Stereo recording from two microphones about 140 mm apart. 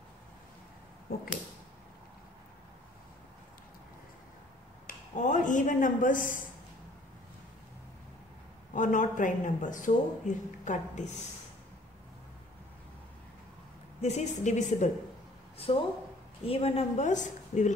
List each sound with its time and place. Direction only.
1.1 s a sound: 90° left
4.8 s speech: 65° left (ahead or behind)
8.7 s speech: 65° left (ahead or behind)
14.0 s speech: 55° left (ahead or behind)
15.5 s speech: 40° left (ahead or behind); by 17.7 s 60° left (ahead or behind)